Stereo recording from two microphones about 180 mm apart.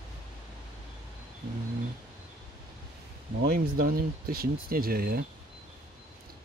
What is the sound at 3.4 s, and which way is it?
Speech, 55° right (ahead or behind).